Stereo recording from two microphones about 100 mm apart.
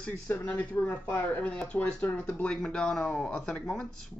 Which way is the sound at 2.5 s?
5° left (ahead or behind).